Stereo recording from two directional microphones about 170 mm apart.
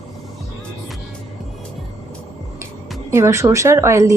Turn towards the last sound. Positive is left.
turn(degrees=-20)  # may be behind; listen again after turning